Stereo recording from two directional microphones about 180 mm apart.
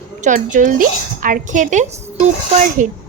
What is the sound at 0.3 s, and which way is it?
A woman's voice, 45° right (ahead or behind).